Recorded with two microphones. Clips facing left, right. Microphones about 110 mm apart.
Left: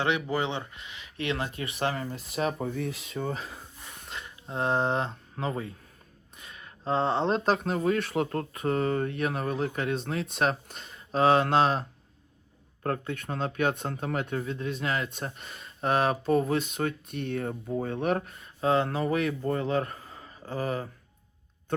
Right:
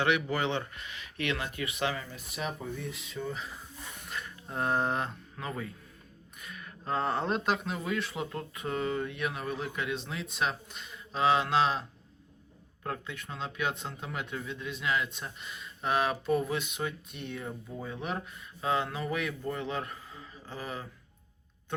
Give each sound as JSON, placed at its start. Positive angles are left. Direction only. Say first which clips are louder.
{"t": 0.0, "sound": "speech", "louder": "left 1 dB", "side_deg": 25}
{"t": 1.8, "sound": "speech", "louder": "left 3 dB", "side_deg": 45}
{"t": 2.0, "sound": "speech", "louder": "left 7 dB", "side_deg": 35}
{"t": 2.6, "sound": "speech", "louder": "left 6 dB", "side_deg": 55}
{"t": 3.9, "sound": "speech", "louder": "even", "side_deg": 25}
{"t": 8.5, "sound": "speech", "louder": "left 5 dB", "side_deg": 40}
{"t": 12.8, "sound": "speech", "louder": "left 7 dB", "side_deg": 50}
{"t": 18.3, "sound": "speech", "louder": "left 5 dB", "side_deg": 30}